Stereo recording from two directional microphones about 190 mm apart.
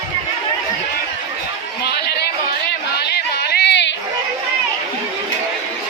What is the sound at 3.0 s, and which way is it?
Yodeling, 60° left (ahead or behind).